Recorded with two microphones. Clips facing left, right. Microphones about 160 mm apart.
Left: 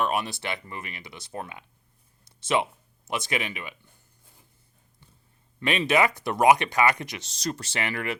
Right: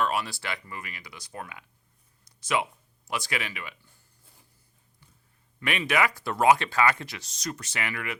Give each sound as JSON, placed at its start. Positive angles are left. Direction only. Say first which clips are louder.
{"t": 0.0, "sound": "speech", "louder": "left 1 dB", "side_deg": 20}
{"t": 2.2, "sound": "a sound", "louder": "left 3 dB", "side_deg": 25}
{"t": 3.1, "sound": "speech", "louder": "left 3 dB", "side_deg": 20}
{"t": 5.5, "sound": "speech", "louder": "left 4 dB", "side_deg": 25}
{"t": 7.3, "sound": "speech", "louder": "left 5 dB", "side_deg": 30}